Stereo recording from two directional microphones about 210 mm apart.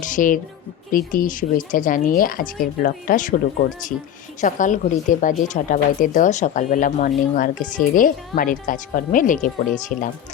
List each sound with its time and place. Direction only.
0.0 s speech: 40° left (ahead or behind)
4.4 s speech: 40° left (ahead or behind)